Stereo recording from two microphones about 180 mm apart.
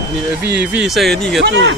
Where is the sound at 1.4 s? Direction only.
75° right (ahead or behind).